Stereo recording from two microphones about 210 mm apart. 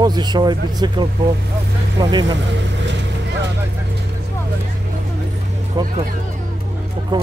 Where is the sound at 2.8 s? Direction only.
60° right (ahead or behind).